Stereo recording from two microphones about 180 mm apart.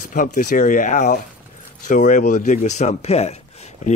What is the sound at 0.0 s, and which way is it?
Speech, 50° left (ahead or behind).